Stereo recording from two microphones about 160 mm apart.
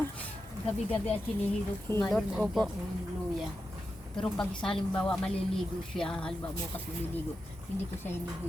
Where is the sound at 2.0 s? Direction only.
Centre (ahead or behind).